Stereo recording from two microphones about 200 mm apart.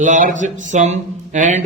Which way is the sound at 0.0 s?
40° right (ahead or behind).